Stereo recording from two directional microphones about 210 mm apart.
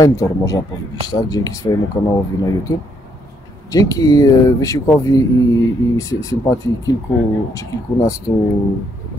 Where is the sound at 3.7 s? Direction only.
15° left (ahead or behind).